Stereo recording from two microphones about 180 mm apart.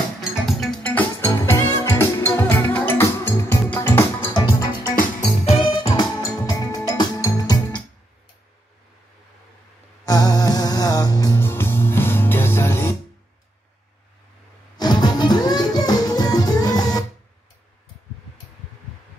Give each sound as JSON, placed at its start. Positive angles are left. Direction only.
{"t": 0.6, "sound": "music", "side_deg": 5}
{"t": 4.9, "sound": "music", "side_deg": 40}
{"t": 10.0, "sound": "music", "side_deg": 20}
{"t": 14.8, "sound": "music", "side_deg": 25}